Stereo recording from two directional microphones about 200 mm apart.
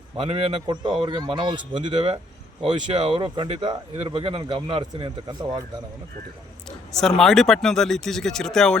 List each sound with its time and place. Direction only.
0.2 s speech: 30° right (ahead or behind)
6.7 s speech: 5° left (ahead or behind)